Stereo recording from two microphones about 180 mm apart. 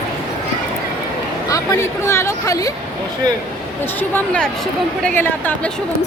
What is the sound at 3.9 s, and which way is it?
Speech, 10° left (ahead or behind).